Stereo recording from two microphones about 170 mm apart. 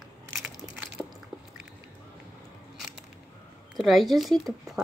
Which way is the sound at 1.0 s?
5° right (ahead or behind).